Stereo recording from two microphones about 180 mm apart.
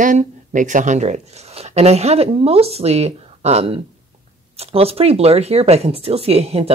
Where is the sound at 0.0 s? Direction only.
45° right (ahead or behind).